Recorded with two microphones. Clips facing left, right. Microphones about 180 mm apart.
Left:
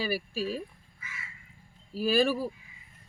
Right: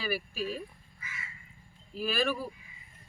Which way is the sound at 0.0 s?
30° left (ahead or behind).